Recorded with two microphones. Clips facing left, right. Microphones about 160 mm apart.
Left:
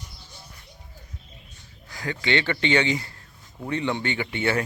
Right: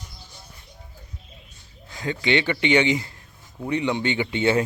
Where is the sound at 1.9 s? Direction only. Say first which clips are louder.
Right 3 dB; 20° right (ahead or behind).